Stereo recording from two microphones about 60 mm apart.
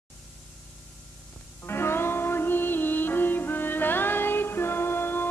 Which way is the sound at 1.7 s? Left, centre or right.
Left.